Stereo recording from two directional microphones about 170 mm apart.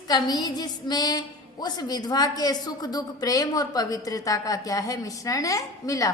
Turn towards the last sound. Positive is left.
turn(degrees=20)  # may be behind; listen again after turning